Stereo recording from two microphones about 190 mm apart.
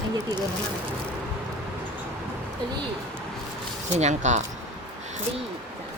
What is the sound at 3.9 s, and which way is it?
Speech, 40° right (ahead or behind).